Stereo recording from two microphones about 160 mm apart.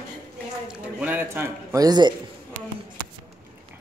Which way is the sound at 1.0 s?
10° right (ahead or behind).